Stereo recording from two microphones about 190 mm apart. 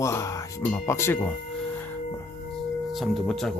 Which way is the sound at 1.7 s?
10° left (ahead or behind).